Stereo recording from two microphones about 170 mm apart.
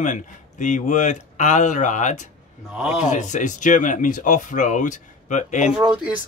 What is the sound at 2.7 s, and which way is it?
Speech, centre (ahead or behind).